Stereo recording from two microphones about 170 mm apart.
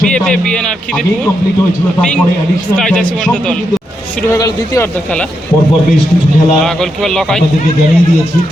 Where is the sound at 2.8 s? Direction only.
5° left (ahead or behind).